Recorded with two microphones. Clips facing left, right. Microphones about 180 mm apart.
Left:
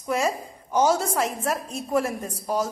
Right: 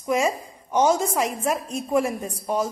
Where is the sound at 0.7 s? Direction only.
Centre (ahead or behind).